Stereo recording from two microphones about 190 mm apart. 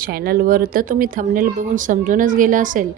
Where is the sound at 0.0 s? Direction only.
50° right (ahead or behind).